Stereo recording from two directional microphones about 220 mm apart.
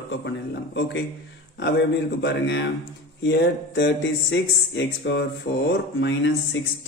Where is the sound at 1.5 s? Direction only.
55° left (ahead or behind).